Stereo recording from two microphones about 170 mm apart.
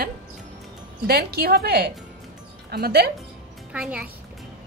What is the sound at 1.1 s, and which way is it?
A woman's voice, 70° right (ahead or behind).